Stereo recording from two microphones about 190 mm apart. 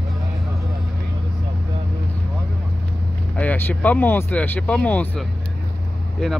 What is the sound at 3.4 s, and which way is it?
Speech, 10° left (ahead or behind).